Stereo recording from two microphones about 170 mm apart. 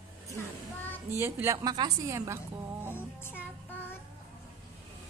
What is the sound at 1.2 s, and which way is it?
A woman's voice, 15° right (ahead or behind).